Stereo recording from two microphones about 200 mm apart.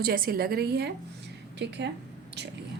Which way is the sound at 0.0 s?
50° right (ahead or behind).